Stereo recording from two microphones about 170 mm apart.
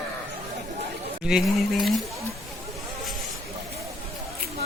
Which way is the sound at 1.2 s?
Centre (ahead or behind).